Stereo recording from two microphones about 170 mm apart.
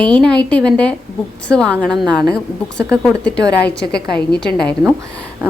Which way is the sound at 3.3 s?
80° left.